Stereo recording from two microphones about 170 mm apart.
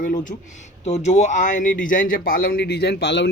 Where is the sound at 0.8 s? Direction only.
40° left (ahead or behind).